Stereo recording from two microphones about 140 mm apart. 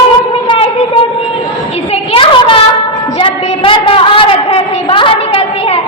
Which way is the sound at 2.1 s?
35° left (ahead or behind).